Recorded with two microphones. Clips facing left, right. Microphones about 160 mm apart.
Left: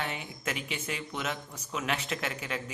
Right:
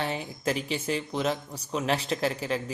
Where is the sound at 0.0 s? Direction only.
35° right (ahead or behind).